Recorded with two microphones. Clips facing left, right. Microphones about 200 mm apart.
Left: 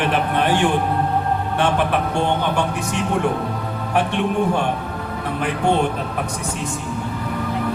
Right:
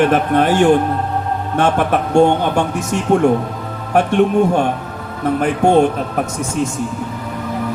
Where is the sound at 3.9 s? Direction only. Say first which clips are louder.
Right 7 dB; 45° right (ahead or behind).